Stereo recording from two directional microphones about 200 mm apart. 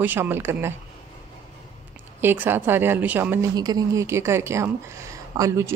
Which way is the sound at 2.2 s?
10° right (ahead or behind).